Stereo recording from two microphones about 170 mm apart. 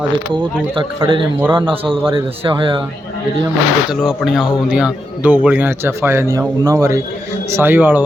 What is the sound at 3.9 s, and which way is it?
A man's voice, centre (ahead or behind).